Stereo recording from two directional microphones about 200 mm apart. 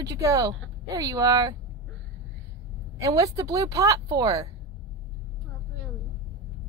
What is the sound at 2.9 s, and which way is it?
Speech, 15° right (ahead or behind).